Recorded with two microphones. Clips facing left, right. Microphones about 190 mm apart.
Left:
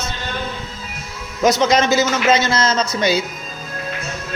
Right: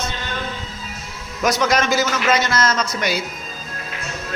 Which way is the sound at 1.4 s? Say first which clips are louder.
Left 4 dB; 25° left (ahead or behind).